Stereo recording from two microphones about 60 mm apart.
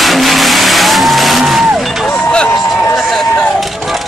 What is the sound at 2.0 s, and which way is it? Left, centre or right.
Vehicle, centre.